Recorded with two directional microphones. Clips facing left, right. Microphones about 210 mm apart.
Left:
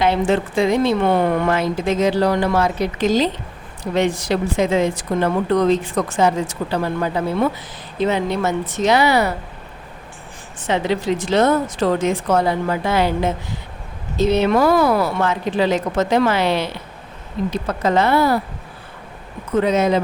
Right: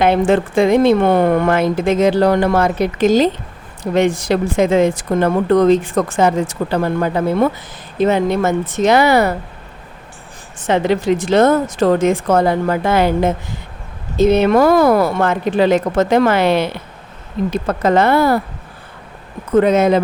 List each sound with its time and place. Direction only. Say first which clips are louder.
0.0 s speech: right 4 dB; 55° right (ahead or behind)
10.6 s speech: right 4 dB; 50° right (ahead or behind)
19.5 s speech: right 5 dB; 55° right (ahead or behind)